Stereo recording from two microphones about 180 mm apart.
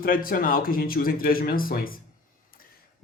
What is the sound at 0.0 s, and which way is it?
Speech, 55° left (ahead or behind).